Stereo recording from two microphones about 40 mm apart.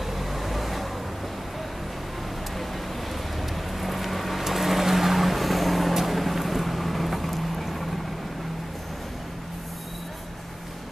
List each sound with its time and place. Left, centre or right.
0.2 s vehicle: centre
3.8 s vehicle: centre